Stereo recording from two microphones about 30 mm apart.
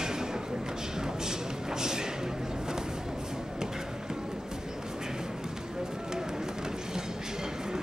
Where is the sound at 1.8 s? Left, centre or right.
Right.